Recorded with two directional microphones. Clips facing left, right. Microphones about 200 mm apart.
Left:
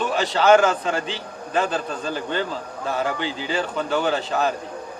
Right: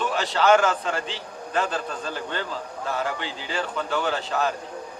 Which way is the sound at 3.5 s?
15° left (ahead or behind).